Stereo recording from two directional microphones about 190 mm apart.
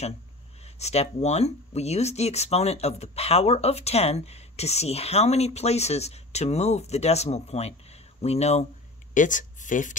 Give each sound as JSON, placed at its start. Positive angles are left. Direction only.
{"t": 0.7, "sound": "speech", "side_deg": 35}